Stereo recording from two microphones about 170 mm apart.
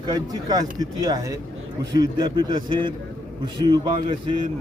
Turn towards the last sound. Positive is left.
turn(degrees=-25)  # may be behind; listen again after turning